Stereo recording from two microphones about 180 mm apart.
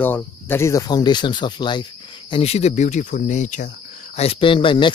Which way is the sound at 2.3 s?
35° left (ahead or behind).